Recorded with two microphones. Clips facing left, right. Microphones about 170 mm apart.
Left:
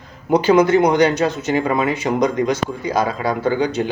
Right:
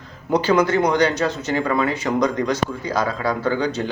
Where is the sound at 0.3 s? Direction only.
20° left (ahead or behind).